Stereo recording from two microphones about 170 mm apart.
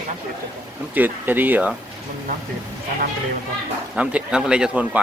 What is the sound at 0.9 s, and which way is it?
Speech, 10° right (ahead or behind).